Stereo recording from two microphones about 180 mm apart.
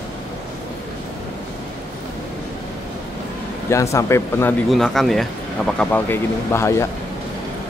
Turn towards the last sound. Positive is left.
turn(degrees=15)  # may be behind; listen again after turning